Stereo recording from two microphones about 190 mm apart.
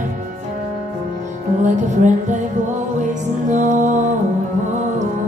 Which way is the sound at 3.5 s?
40° right (ahead or behind).